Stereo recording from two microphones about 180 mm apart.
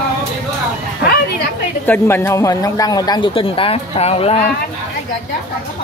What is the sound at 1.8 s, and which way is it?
A man's voice, 10° left (ahead or behind).